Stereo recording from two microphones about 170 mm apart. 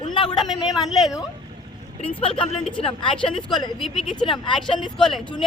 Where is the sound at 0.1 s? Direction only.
25° left (ahead or behind).